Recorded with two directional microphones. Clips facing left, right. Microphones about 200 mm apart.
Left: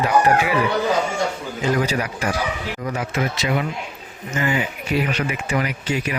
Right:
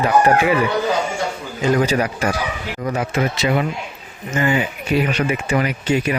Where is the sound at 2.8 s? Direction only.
30° right (ahead or behind).